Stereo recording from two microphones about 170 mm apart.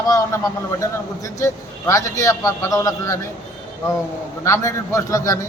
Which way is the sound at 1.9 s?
15° left (ahead or behind).